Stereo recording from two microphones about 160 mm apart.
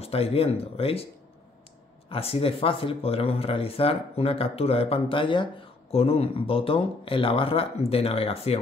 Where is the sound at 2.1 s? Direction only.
35° left (ahead or behind).